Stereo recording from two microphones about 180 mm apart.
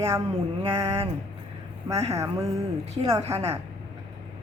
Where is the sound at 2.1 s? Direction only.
15° right (ahead or behind).